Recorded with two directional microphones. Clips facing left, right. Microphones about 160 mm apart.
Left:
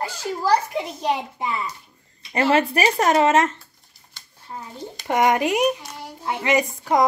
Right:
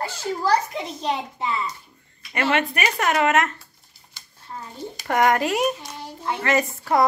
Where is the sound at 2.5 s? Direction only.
30° left (ahead or behind).